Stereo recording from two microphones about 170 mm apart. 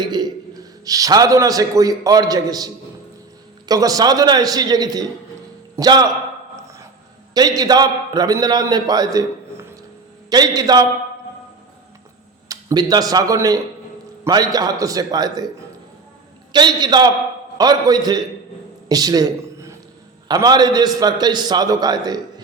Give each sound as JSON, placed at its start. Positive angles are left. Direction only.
{"t": 0.0, "sound": "a man's voice", "side_deg": -25}
{"t": 3.7, "sound": "a man's voice", "side_deg": -20}
{"t": 7.3, "sound": "a man's voice", "side_deg": -25}
{"t": 12.5, "sound": "a man's voice", "side_deg": -20}
{"t": 16.5, "sound": "a man's voice", "side_deg": -25}
{"t": 18.9, "sound": "a sound", "side_deg": -20}
{"t": 20.2, "sound": "a man's voice", "side_deg": -25}